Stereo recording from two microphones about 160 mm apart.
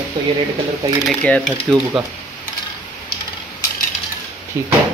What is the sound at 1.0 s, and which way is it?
Speech, 5° left (ahead or behind).